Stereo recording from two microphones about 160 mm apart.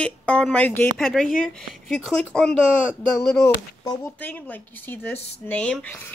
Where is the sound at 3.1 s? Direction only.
20° left (ahead or behind).